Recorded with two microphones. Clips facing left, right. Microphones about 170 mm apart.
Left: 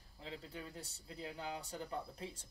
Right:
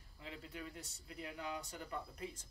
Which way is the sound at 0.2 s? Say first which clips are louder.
Left 1 dB; 30° left (ahead or behind).